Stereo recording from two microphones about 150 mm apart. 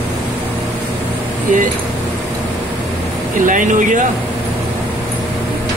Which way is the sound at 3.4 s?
60° right (ahead or behind).